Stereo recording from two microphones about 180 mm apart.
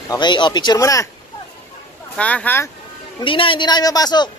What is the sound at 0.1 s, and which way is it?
Speech, 25° left (ahead or behind).